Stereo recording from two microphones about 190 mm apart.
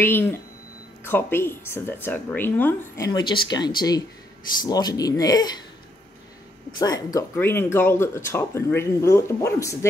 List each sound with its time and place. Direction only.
0.0 s speech: 10° left (ahead or behind)
3.1 s speech: 20° left (ahead or behind)
6.8 s speech: 20° left (ahead or behind)